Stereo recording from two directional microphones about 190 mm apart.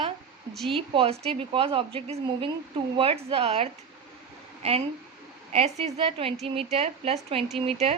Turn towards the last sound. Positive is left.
turn(degrees=-30)  # may be behind; listen again after turning